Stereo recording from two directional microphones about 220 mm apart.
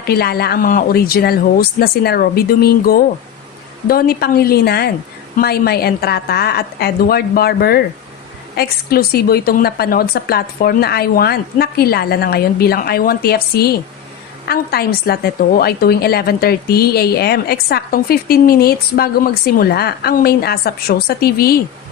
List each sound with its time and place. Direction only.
0.0 s a woman's voice: 45° left (ahead or behind)